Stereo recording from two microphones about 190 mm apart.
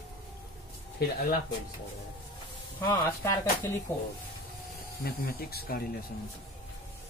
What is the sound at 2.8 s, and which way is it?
Speech, 20° left (ahead or behind).